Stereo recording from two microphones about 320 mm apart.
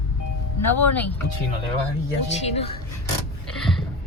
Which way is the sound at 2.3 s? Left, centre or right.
Centre.